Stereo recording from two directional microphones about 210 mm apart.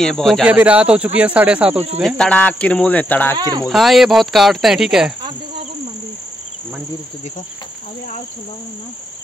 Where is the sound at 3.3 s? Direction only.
20° right (ahead or behind).